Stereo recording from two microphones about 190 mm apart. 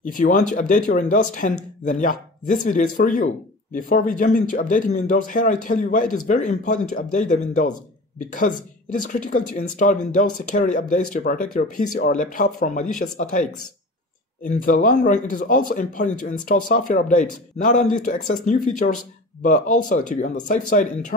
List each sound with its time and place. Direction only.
0.0 s speech: 45° left (ahead or behind)
14.4 s speech: 45° left (ahead or behind)